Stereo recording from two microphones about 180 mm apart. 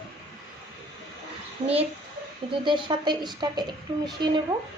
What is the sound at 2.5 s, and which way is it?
A woman's voice, 25° right (ahead or behind).